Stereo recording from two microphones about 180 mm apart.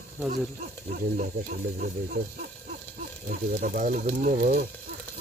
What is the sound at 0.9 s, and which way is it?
Speech, 50° right (ahead or behind).